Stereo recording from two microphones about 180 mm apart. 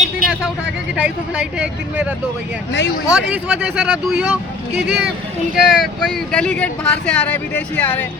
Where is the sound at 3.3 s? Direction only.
10° right (ahead or behind).